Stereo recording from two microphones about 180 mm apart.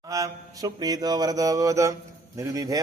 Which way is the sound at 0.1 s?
20° right (ahead or behind).